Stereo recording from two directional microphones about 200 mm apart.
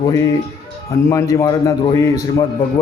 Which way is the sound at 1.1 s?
15° left (ahead or behind).